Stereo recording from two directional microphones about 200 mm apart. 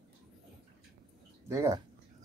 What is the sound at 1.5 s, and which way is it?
Speech, 15° right (ahead or behind).